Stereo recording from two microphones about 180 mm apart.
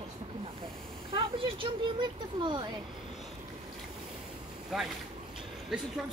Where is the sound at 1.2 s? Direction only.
25° right (ahead or behind).